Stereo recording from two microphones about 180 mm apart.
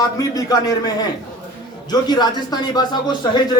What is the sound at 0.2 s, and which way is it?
Speech, 20° left (ahead or behind).